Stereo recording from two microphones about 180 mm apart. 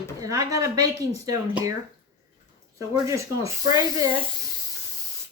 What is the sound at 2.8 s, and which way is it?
Speech, 15° right (ahead or behind).